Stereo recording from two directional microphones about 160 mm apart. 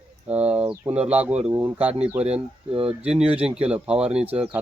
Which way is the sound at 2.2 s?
40° right (ahead or behind).